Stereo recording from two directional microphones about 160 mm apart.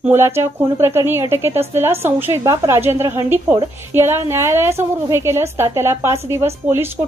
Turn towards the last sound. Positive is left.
turn(degrees=-15)  # may be behind; listen again after turning